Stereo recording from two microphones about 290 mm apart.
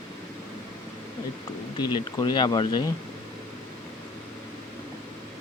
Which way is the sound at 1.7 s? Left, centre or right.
Centre.